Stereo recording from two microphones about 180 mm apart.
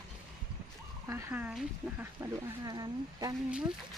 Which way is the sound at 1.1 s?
10° right (ahead or behind).